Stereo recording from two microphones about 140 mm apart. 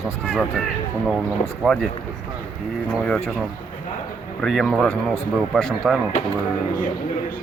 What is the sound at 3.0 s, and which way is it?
Speech, 5° left (ahead or behind).